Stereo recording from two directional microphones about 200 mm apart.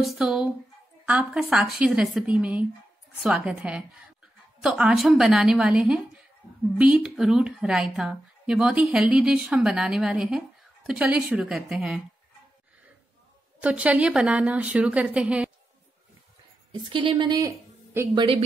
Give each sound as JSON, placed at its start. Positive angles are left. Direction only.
{"t": 0.0, "sound": "a woman's voice", "side_deg": 0}
{"t": 13.6, "sound": "a woman's voice", "side_deg": -5}
{"t": 16.8, "sound": "a woman's voice", "side_deg": -25}